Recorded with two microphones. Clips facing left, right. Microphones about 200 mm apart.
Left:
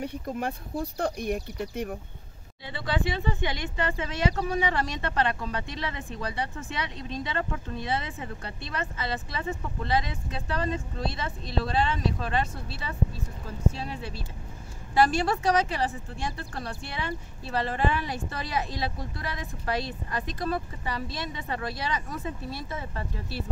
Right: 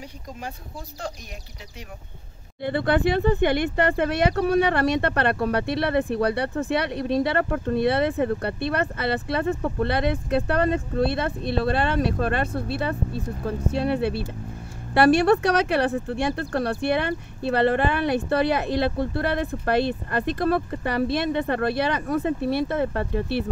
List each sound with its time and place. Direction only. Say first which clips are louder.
0.0 s speech: left 5 dB; 60° left (ahead or behind)
2.6 s speech: right 9 dB; 60° right (ahead or behind)